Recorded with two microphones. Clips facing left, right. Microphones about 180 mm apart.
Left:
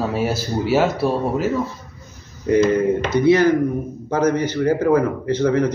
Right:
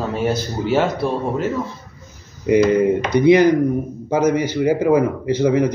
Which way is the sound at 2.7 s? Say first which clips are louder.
Right 2 dB; 15° right (ahead or behind).